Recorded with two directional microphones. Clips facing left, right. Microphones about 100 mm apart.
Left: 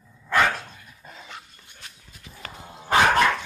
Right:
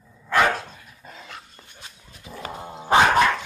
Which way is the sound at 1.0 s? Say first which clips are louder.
Right 1 dB; centre (ahead or behind).